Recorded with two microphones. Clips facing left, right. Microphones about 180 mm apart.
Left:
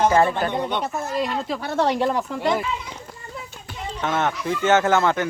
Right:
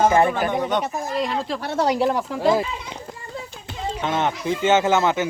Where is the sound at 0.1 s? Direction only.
20° right (ahead or behind).